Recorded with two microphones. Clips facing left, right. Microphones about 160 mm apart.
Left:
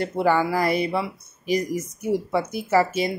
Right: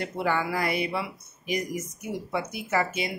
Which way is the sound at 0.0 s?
35° left (ahead or behind).